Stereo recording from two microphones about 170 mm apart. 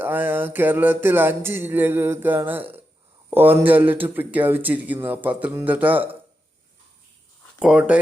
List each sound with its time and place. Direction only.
0.0 s speech: 10° right (ahead or behind)
7.6 s speech: 5° right (ahead or behind)